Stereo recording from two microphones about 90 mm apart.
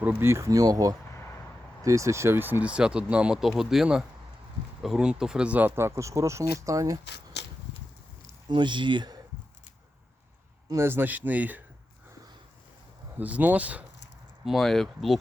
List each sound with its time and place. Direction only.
0.0 s speech: 15° right (ahead or behind)
0.3 s speech: 35° right (ahead or behind)
1.1 s a sound: 30° left (ahead or behind)
1.8 s speech: 35° right (ahead or behind)
8.4 s speech: 60° right (ahead or behind)
10.8 s speech: 25° right (ahead or behind)
13.1 s speech: 15° right (ahead or behind)
14.4 s speech: 5° left (ahead or behind)